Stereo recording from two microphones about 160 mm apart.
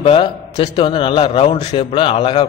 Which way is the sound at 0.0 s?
35° left (ahead or behind).